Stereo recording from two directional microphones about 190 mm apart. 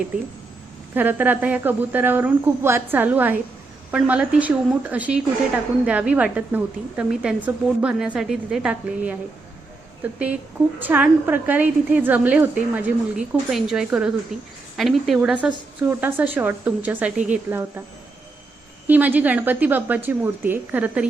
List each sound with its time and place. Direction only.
0.9 s a woman's voice: 10° right (ahead or behind)
18.9 s a woman's voice: 10° right (ahead or behind)